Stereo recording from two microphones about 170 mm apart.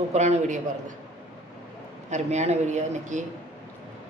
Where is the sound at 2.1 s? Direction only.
40° right (ahead or behind).